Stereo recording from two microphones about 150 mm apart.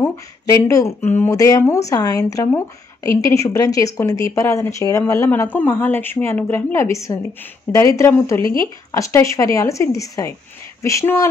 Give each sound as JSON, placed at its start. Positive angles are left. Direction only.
{"t": 0.0, "sound": "speech", "side_deg": 20}